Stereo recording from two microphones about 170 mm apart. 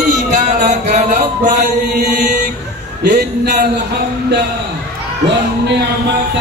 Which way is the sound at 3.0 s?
70° right (ahead or behind).